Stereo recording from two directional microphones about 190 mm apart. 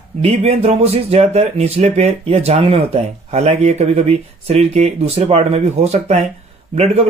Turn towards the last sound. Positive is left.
turn(degrees=-35)  # may be behind; listen again after turning